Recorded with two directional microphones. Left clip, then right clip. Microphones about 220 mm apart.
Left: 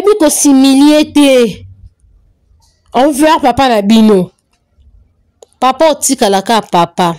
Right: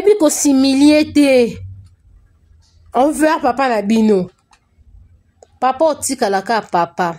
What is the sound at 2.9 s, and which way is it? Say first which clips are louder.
Speech: left 5 dB; 30° left (ahead or behind).